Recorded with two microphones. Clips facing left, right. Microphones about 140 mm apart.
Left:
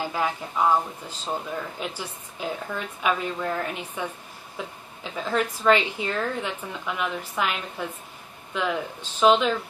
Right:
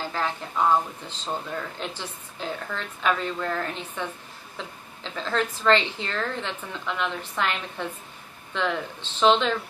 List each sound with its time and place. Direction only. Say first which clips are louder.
0.0 s a woman's voice: left 2 dB; 10° left (ahead or behind)